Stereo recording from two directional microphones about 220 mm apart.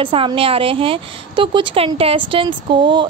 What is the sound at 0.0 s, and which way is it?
A woman's voice, 25° right (ahead or behind).